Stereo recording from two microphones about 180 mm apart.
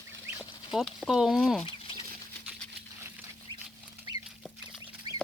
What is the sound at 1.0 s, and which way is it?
Speech, centre (ahead or behind).